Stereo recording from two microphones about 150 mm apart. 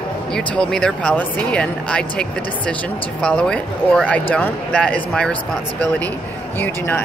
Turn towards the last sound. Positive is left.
turn(degrees=15)  # may be behind; listen again after turning